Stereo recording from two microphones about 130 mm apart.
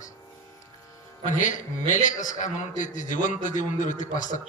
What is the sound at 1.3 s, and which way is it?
A man's voice, 80° left.